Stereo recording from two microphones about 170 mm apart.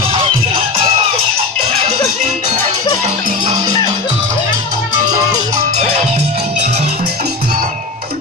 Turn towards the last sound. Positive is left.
turn(degrees=-40)  # may be behind; listen again after turning